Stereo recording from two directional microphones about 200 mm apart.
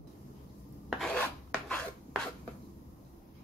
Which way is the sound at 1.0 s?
5° left (ahead or behind).